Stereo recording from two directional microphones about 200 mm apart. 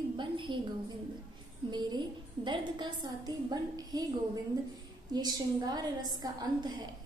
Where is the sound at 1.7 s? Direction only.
20° right (ahead or behind).